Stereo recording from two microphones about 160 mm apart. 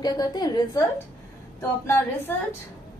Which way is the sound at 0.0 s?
25° left (ahead or behind).